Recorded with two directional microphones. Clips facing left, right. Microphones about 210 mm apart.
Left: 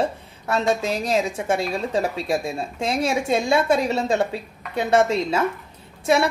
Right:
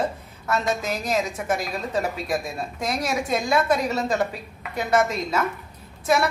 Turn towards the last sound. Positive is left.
turn(degrees=30)  # may be behind; listen again after turning